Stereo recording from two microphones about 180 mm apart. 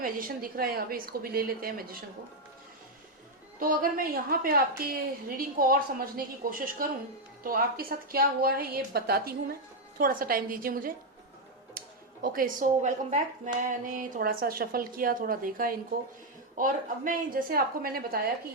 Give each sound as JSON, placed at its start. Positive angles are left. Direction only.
{"t": 0.0, "sound": "a woman's voice", "side_deg": -50}
{"t": 3.6, "sound": "a woman's voice", "side_deg": -50}
{"t": 12.2, "sound": "a woman's voice", "side_deg": -50}